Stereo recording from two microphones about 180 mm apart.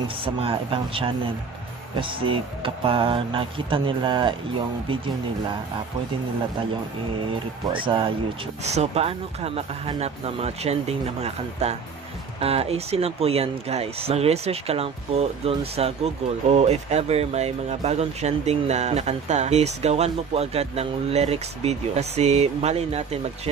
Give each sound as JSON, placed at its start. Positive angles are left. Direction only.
{"t": 0.2, "sound": "speech", "side_deg": -30}
{"t": 2.2, "sound": "speech", "side_deg": -30}
{"t": 7.7, "sound": "speech", "side_deg": -30}